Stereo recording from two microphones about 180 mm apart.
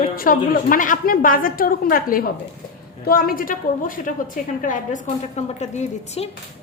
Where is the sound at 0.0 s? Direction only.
50° left (ahead or behind).